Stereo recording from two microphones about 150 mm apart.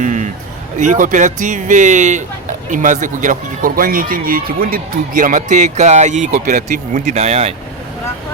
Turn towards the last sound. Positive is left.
turn(degrees=-45)  # may be behind; listen again after turning